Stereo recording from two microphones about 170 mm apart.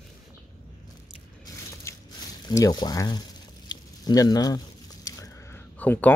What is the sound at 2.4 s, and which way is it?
Speech, 20° left (ahead or behind).